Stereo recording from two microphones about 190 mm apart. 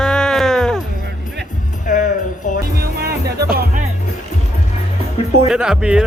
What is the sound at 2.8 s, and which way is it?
Music, 55° right (ahead or behind).